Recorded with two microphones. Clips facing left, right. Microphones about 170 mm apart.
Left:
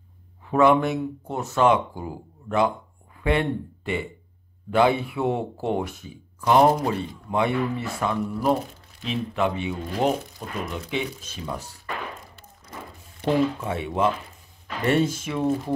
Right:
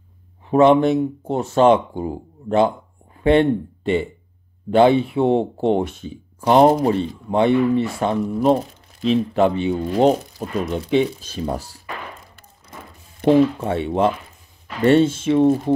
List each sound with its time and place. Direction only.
0.5 s speech: 25° right (ahead or behind)
13.2 s speech: 50° right (ahead or behind)
13.6 s speech: 30° right (ahead or behind)